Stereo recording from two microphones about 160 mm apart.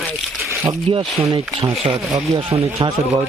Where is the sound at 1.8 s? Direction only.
30° right (ahead or behind).